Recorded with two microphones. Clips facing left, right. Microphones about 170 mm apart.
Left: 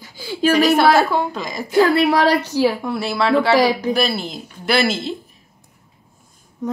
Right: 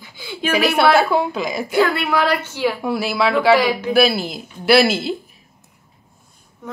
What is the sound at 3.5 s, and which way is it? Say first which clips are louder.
Female singing: even; 40° left (ahead or behind).